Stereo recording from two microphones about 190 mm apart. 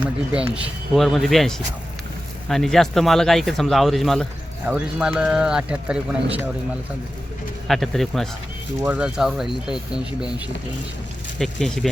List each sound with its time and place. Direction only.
0.0 s speech: 5° right (ahead or behind)
7.7 s speech: centre (ahead or behind)
11.3 s speech: centre (ahead or behind)